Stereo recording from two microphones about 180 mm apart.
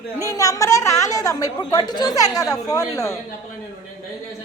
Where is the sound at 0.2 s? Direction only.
20° left (ahead or behind).